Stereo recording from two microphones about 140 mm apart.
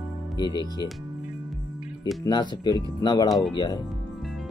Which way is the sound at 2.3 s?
30° left (ahead or behind).